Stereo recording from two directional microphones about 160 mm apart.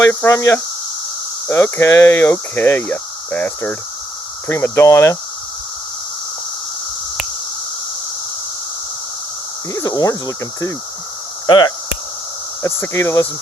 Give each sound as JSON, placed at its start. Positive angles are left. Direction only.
{"t": 0.0, "sound": "speech", "side_deg": 15}
{"t": 9.7, "sound": "speech", "side_deg": 20}
{"t": 12.6, "sound": "speech", "side_deg": 20}